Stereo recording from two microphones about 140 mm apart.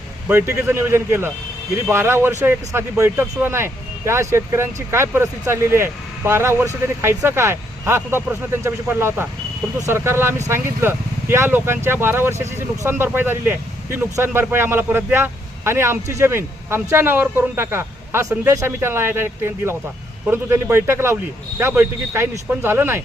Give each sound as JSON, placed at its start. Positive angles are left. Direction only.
{"t": 0.3, "sound": "speech", "side_deg": -15}